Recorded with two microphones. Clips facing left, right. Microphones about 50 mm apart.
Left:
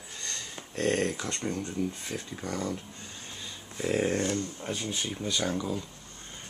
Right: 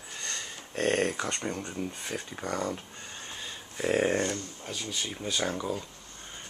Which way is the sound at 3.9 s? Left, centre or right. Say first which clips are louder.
Right 1 dB; centre.